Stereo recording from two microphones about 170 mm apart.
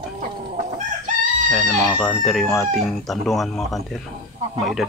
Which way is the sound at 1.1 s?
45° right (ahead or behind).